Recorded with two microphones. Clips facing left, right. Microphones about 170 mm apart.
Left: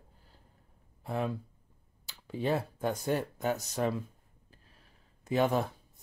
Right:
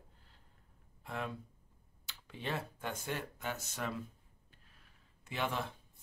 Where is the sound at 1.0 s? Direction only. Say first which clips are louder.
Left 8 dB; 35° left (ahead or behind).